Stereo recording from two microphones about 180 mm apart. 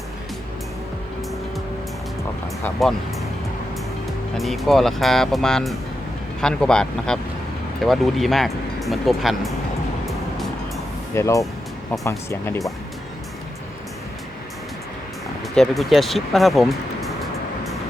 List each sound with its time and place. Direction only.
2.8 s speech: centre (ahead or behind)
4.4 s speech: centre (ahead or behind)
11.1 s speech: 15° left (ahead or behind)
15.5 s speech: centre (ahead or behind)